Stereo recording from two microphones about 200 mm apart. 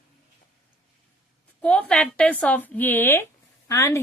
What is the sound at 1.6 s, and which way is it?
Speech, 5° left (ahead or behind).